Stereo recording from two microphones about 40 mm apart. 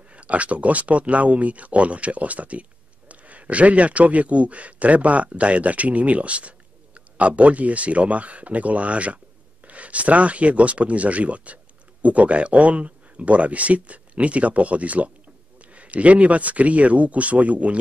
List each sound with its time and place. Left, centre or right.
0.1 s a man's voice: right